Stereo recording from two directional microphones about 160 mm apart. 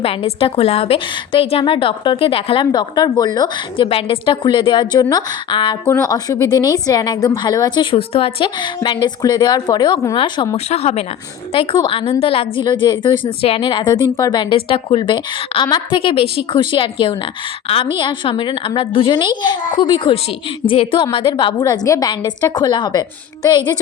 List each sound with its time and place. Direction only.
0.0 s a woman's voice: 35° left (ahead or behind)
10.7 s a woman's voice: 40° left (ahead or behind)